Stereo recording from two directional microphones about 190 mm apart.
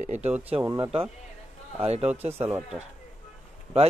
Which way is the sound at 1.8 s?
35° right (ahead or behind).